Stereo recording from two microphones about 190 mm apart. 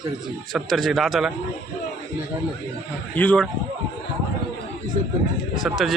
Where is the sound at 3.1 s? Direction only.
5° left (ahead or behind).